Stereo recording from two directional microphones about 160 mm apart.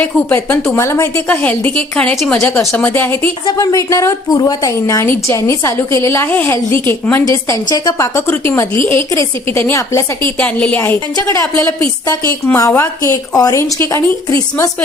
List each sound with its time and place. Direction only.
0.0 s a woman's voice: 10° left (ahead or behind)